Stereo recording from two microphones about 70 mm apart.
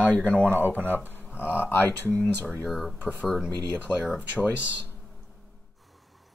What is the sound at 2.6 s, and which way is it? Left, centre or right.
Speech, centre.